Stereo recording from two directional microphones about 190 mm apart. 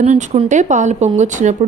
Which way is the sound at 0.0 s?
35° right (ahead or behind).